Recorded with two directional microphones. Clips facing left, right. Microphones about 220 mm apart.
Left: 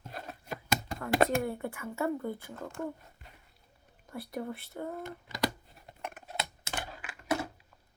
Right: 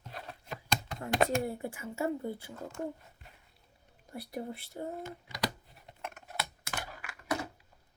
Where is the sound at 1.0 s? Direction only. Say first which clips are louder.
Left 2 dB; 25° right (ahead or behind).